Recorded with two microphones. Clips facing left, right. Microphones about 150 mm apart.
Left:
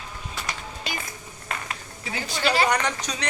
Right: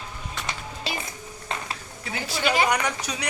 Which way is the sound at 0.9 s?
30° right (ahead or behind).